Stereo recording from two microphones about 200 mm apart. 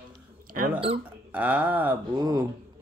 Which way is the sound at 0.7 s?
25° right (ahead or behind).